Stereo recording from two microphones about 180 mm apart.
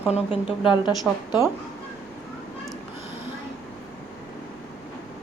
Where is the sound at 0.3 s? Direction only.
5° right (ahead or behind).